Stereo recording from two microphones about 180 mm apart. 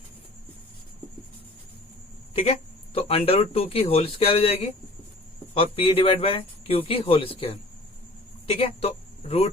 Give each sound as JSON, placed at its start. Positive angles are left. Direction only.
{"t": 2.3, "sound": "speech", "side_deg": 30}
{"t": 8.5, "sound": "speech", "side_deg": 30}